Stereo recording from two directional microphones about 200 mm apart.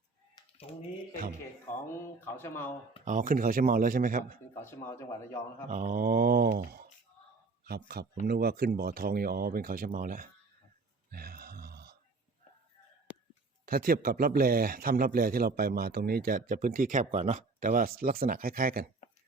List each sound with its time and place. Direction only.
0.3 s typing: 30° left (ahead or behind)
2.3 s speech: 10° left (ahead or behind)
3.0 s speech: 40° right (ahead or behind)
4.6 s speech: 15° left (ahead or behind)
5.7 s speech: 40° right (ahead or behind)
11.1 s grunt: 50° right (ahead or behind)
13.7 s speech: 50° right (ahead or behind)